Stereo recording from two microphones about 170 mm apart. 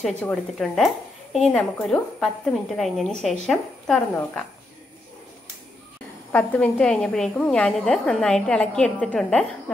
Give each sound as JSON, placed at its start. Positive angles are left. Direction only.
{"t": 0.0, "sound": "a woman's voice", "side_deg": 5}
{"t": 6.3, "sound": "a woman's voice", "side_deg": 10}